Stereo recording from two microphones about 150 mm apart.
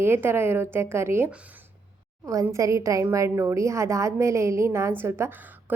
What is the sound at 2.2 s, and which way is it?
A woman's voice, 20° right (ahead or behind).